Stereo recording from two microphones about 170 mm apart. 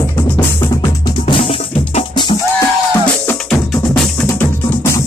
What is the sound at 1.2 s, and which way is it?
Music, 35° left (ahead or behind).